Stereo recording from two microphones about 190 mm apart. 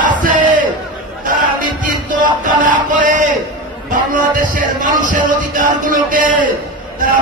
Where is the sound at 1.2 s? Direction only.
45° right (ahead or behind).